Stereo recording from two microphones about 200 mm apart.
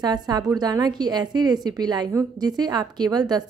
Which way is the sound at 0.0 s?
20° right (ahead or behind).